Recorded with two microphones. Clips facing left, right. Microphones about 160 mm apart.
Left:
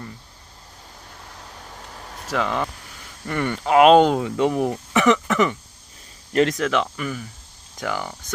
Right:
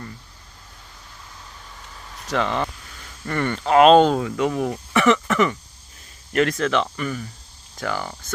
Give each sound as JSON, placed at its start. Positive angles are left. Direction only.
{"t": 1.4, "sound": "vehicle", "side_deg": 55}
{"t": 2.2, "sound": "speech", "side_deg": 5}
{"t": 6.6, "sound": "speech", "side_deg": 5}